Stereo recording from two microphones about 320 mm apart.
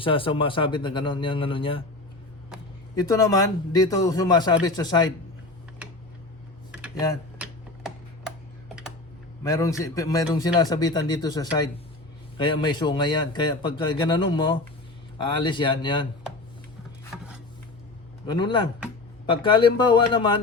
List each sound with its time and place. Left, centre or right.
0.0 s a man's voice: centre
2.9 s a man's voice: centre
6.7 s a sound: centre
9.4 s a man's voice: centre
18.3 s a man's voice: centre